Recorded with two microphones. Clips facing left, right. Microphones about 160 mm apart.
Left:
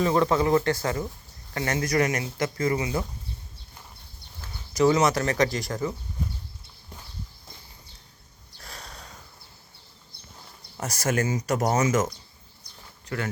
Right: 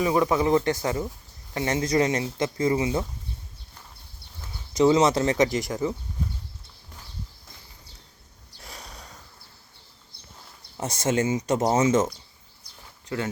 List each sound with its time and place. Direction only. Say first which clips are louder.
0.0 s speech: even; 10° right (ahead or behind)
4.4 s speech: right 1 dB; 20° right (ahead or behind)
8.6 s a sound: even; 15° right (ahead or behind)
10.8 s speech: right 2 dB; 25° right (ahead or behind)